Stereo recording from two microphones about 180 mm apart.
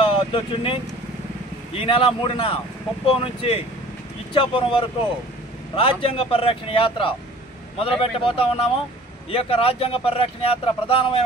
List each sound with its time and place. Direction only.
0.0 s vehicle: 30° left (ahead or behind)
1.8 s a man's voice: 30° left (ahead or behind)